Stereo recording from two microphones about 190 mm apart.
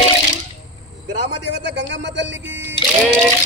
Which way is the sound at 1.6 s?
70° right (ahead or behind).